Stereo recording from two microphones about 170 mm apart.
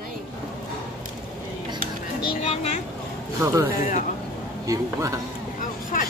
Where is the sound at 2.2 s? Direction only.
35° left (ahead or behind).